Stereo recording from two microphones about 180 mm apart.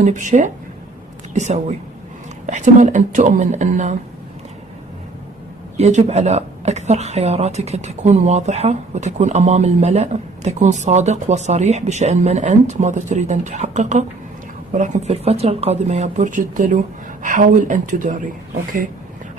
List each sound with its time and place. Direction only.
0.0 s speech: 45° right (ahead or behind)
5.8 s a woman's voice: 40° right (ahead or behind)